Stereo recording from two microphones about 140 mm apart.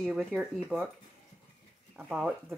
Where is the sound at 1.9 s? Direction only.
5° right (ahead or behind).